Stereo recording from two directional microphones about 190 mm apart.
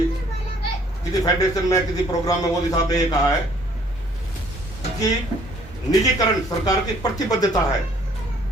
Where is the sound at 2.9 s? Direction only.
20° left (ahead or behind).